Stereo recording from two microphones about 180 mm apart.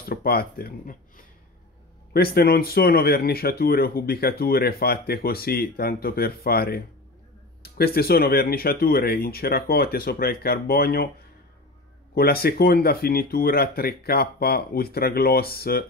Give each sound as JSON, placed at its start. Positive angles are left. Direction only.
{"t": 0.0, "sound": "speech", "side_deg": 55}
{"t": 12.1, "sound": "speech", "side_deg": 60}